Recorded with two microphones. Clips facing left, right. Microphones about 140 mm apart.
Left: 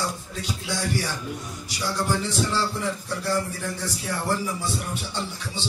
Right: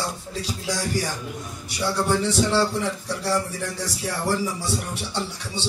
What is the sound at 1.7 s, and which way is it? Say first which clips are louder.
Speech: right 3 dB; 70° right (ahead or behind).